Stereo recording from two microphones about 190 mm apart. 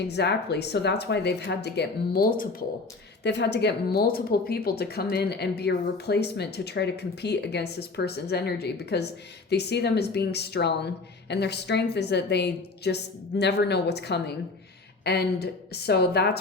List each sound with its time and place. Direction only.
0.1 s speech: 60° left (ahead or behind)
3.2 s speech: 65° left (ahead or behind)